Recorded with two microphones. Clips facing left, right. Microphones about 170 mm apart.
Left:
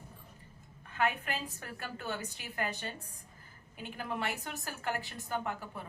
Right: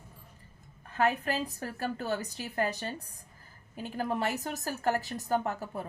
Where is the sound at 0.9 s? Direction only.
40° right (ahead or behind).